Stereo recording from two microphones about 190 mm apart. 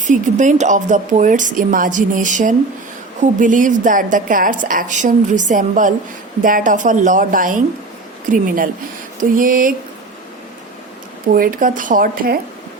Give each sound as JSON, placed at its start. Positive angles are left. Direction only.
{"t": 0.1, "sound": "a woman's voice", "side_deg": -40}
{"t": 11.3, "sound": "a woman's voice", "side_deg": -45}